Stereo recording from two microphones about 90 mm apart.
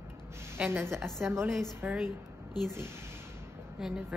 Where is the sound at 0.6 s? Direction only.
30° right (ahead or behind).